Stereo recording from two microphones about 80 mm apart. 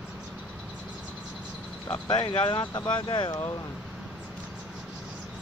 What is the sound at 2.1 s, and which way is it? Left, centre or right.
Speech, left.